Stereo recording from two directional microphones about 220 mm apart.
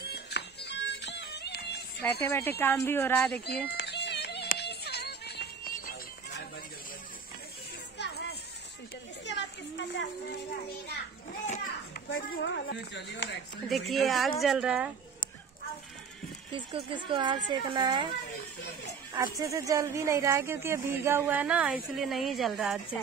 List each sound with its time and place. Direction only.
0.0 s music: 45° left (ahead or behind)
2.6 s a woman's voice: 10° left (ahead or behind)
3.3 s a sound: 45° left (ahead or behind)
8.0 s children playing: 50° left (ahead or behind)
11.4 s a child's voice: 35° left (ahead or behind); by 13.4 s 55° left (ahead or behind)
13.7 s speech: centre (ahead or behind)
16.5 s speech: 20° right (ahead or behind)
19.1 s speech: 15° right (ahead or behind)